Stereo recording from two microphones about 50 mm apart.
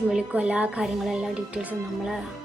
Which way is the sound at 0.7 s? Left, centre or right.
Centre.